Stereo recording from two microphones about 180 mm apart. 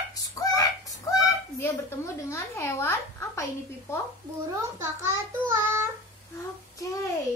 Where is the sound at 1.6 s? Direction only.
15° left (ahead or behind).